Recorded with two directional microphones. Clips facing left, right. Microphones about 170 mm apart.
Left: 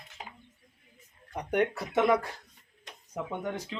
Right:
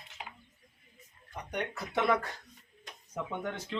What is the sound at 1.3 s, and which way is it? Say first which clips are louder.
Speech: left 9 dB; 55° left (ahead or behind).